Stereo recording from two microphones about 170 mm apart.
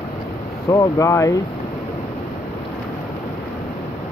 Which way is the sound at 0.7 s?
20° left (ahead or behind).